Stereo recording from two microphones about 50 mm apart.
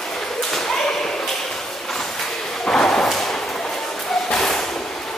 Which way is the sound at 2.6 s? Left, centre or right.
Centre.